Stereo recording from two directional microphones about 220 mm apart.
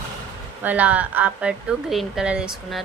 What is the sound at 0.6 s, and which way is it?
Speech, 5° right (ahead or behind).